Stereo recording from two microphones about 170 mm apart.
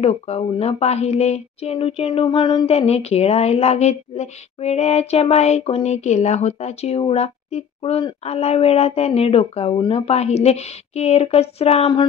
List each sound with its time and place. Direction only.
0.0 s a woman's voice: 35° left (ahead or behind)